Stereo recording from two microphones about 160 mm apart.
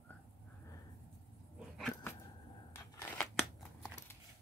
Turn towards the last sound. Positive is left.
turn(degrees=0)  # may be behind; listen again after turning